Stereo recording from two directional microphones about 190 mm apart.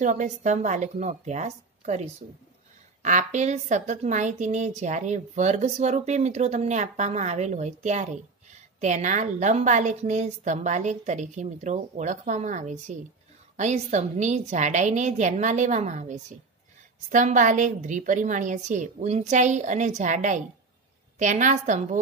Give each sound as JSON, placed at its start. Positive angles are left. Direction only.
{"t": 0.0, "sound": "a woman's voice", "side_deg": -40}